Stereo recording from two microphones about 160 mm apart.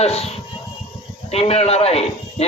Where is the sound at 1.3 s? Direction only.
40° left (ahead or behind).